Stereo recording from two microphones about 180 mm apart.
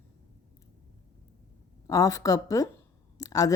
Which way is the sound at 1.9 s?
20° left (ahead or behind).